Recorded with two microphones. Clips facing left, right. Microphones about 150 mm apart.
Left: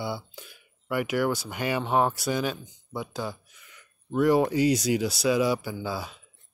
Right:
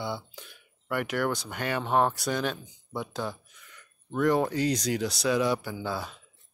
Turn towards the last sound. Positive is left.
turn(degrees=5)  # may be behind; listen again after turning